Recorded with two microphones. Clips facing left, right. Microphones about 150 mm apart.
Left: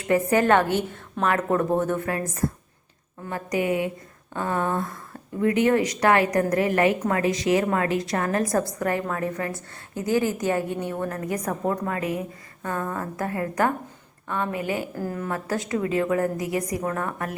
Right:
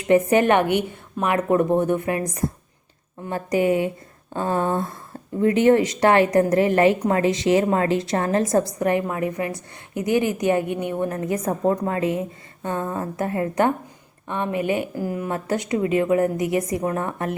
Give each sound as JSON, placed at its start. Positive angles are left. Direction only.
{"t": 0.1, "sound": "a woman's voice", "side_deg": -20}
{"t": 3.2, "sound": "a woman's voice", "side_deg": -30}